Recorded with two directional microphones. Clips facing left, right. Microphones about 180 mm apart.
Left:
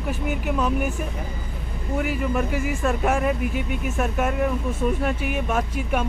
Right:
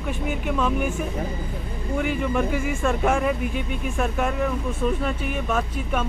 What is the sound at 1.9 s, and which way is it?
Speech, 5° left (ahead or behind).